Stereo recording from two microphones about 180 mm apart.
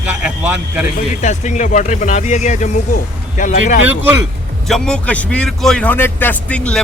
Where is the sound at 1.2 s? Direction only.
40° left (ahead or behind).